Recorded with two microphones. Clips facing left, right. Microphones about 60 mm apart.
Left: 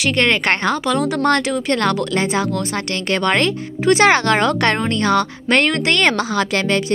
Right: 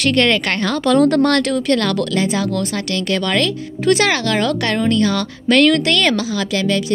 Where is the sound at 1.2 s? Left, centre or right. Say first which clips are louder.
Right 1 dB; left.